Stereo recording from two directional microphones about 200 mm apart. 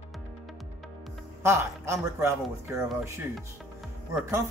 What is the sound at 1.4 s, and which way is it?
A man's voice, 15° right (ahead or behind).